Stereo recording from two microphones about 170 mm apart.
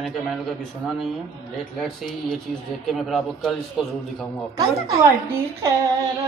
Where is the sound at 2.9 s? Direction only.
Centre (ahead or behind).